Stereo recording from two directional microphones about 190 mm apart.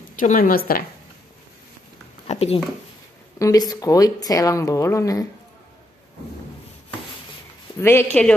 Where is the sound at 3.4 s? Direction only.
20° left (ahead or behind).